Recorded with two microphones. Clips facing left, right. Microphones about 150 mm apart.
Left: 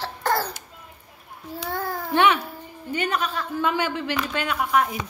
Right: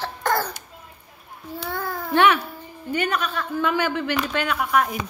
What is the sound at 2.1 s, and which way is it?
A woman's voice, 20° left (ahead or behind).